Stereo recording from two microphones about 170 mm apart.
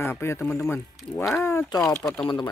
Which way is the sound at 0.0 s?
15° left (ahead or behind).